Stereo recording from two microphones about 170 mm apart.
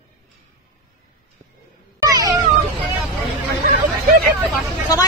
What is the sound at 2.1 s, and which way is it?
Meow, 20° right (ahead or behind).